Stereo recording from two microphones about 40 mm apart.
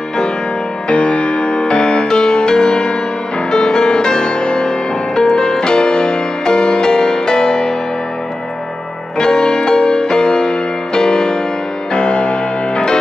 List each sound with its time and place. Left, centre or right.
0.8 s music: left
9.2 s music: centre